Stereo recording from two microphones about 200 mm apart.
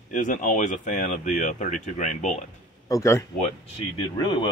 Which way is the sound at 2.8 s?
15° left (ahead or behind).